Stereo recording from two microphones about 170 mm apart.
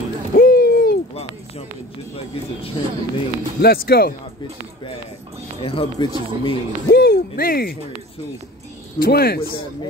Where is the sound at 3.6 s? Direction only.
65° left (ahead or behind).